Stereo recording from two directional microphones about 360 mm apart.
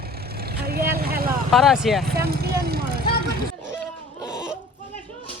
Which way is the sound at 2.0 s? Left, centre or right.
Right.